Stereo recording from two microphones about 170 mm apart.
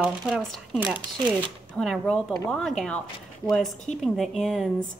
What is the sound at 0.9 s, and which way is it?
Speech, 25° right (ahead or behind).